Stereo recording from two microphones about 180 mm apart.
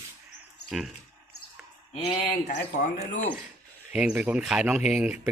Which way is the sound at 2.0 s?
25° left (ahead or behind).